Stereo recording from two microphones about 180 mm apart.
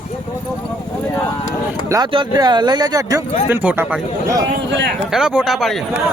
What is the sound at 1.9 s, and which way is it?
Speech, 20° right (ahead or behind).